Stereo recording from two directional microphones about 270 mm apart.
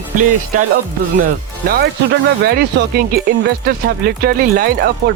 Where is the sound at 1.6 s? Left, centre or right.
Right.